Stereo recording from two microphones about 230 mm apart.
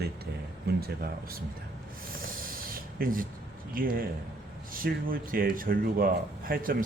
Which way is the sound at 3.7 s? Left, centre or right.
Right.